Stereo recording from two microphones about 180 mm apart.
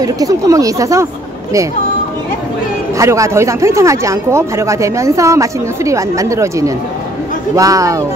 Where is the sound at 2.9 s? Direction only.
15° right (ahead or behind).